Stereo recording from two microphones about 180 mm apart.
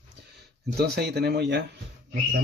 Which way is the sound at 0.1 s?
65° right (ahead or behind).